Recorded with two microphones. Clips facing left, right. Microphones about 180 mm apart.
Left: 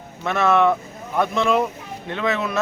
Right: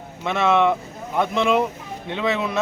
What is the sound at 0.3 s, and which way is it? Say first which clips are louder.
Speech: left 1 dB; 20° right (ahead or behind).